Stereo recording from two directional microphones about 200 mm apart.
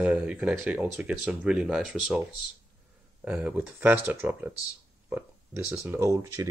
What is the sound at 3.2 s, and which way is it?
Speech, 5° right (ahead or behind).